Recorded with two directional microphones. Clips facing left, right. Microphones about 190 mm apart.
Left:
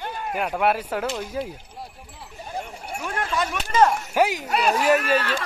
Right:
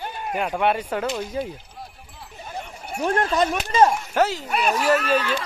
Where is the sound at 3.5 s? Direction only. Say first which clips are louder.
Left 3 dB; 20° right (ahead or behind).